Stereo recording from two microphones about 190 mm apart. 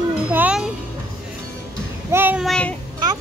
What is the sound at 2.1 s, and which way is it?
Child singing, 10° right (ahead or behind).